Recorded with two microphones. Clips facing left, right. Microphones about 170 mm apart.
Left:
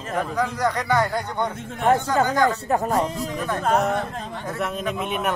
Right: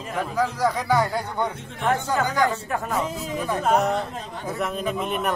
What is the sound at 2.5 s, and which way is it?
Speech, 40° left (ahead or behind).